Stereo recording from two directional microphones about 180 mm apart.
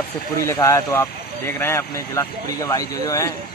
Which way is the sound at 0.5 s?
15° left (ahead or behind).